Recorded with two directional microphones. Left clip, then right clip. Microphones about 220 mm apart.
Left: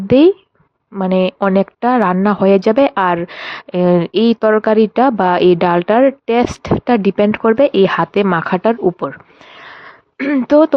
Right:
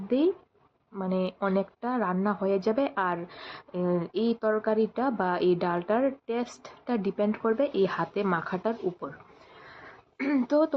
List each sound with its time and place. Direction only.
0.1 s speech: 45° left (ahead or behind)
10.2 s speech: 35° left (ahead or behind)